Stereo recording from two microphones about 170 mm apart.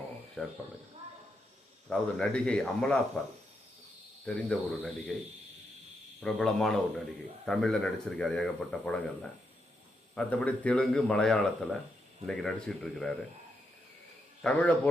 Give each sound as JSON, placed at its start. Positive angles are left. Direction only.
{"t": 0.4, "sound": "speech", "side_deg": 5}
{"t": 1.9, "sound": "speech", "side_deg": 5}
{"t": 4.4, "sound": "speech", "side_deg": 10}
{"t": 6.2, "sound": "speech", "side_deg": 5}
{"t": 10.2, "sound": "speech", "side_deg": 5}
{"t": 14.4, "sound": "speech", "side_deg": 5}